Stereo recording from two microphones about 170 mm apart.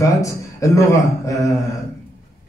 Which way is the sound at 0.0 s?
20° left (ahead or behind).